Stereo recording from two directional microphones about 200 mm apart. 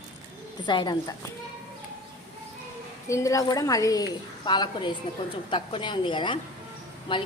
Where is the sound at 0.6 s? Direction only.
20° left (ahead or behind).